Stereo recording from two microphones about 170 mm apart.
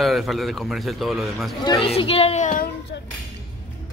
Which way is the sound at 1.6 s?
30° left (ahead or behind).